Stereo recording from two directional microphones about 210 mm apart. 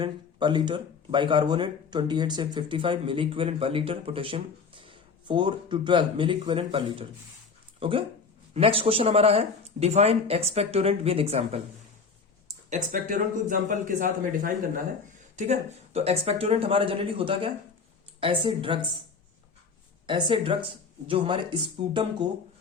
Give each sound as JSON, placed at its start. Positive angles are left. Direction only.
{"t": 0.0, "sound": "speech", "side_deg": -20}
{"t": 12.7, "sound": "speech", "side_deg": -35}
{"t": 20.1, "sound": "speech", "side_deg": -25}